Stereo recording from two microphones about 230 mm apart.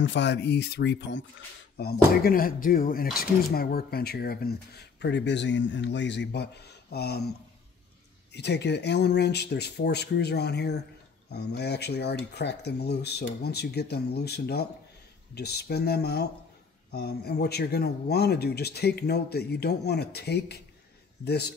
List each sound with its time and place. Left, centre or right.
0.0 s speech: left
8.3 s speech: left